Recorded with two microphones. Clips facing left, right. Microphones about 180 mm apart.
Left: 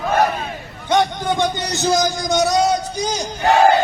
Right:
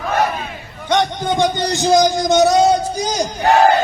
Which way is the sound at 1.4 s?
15° right (ahead or behind).